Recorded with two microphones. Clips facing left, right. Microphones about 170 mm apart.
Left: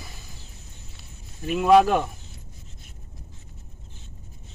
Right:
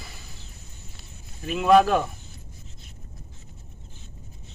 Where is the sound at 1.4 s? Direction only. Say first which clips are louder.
Left 1 dB; 10° left (ahead or behind).